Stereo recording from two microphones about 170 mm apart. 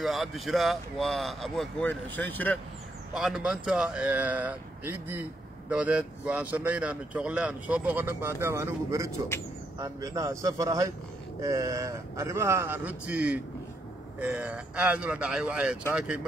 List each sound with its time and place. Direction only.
0.0 s speech: centre (ahead or behind)
3.2 s a man's voice: centre (ahead or behind)